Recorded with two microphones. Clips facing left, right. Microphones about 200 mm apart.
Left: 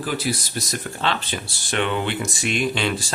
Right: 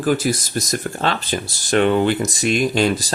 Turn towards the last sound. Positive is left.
turn(degrees=-40)  # may be behind; listen again after turning